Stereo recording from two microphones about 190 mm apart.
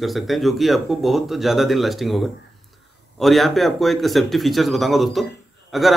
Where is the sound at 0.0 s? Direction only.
Centre (ahead or behind).